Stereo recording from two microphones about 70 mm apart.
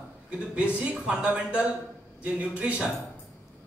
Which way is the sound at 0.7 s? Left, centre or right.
Centre.